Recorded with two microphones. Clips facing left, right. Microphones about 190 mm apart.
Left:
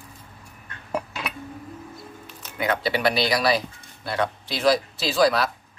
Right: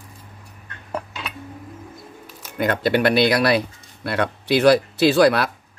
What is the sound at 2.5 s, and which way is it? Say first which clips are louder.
Speech: right 5 dB; 50° right (ahead or behind).